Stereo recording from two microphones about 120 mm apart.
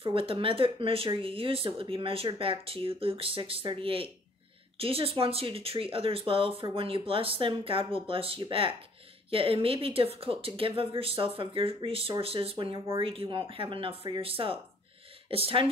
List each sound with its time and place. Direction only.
0.0 s speech: 50° right (ahead or behind)